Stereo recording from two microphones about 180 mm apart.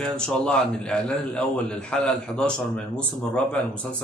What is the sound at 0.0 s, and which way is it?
Speech, 5° left (ahead or behind).